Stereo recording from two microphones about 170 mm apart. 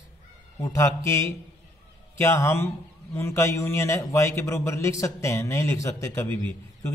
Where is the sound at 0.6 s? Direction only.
15° left (ahead or behind).